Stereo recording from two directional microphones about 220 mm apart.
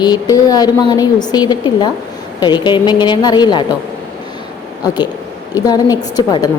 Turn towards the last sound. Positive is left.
turn(degrees=15)  # may be behind; listen again after turning